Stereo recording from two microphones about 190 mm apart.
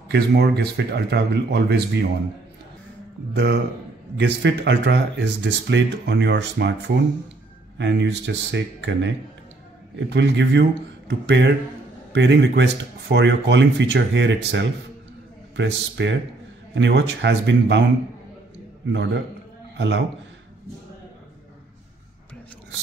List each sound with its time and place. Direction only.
0.1 s speech: 60° right (ahead or behind)
3.3 s speech: 60° right (ahead or behind)
18.9 s speech: 70° right (ahead or behind)